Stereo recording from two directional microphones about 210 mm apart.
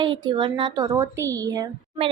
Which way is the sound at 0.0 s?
20° right (ahead or behind).